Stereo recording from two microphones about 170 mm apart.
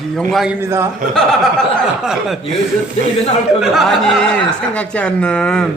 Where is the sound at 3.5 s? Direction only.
Centre (ahead or behind).